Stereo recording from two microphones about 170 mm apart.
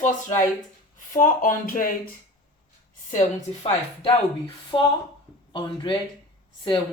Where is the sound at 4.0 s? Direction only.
30° left (ahead or behind).